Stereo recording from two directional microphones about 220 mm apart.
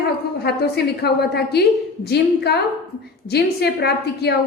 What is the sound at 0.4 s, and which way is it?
A woman's voice, 45° left (ahead or behind).